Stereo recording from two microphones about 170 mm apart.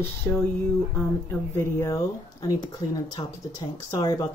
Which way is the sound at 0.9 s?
15° left (ahead or behind).